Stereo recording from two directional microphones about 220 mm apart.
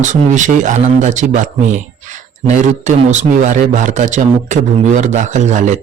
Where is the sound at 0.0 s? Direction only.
35° right (ahead or behind).